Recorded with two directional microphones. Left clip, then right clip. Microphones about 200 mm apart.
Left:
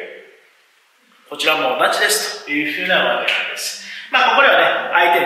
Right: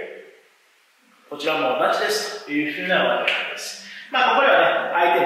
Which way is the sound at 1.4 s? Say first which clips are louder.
Left 5 dB; 10° right (ahead or behind).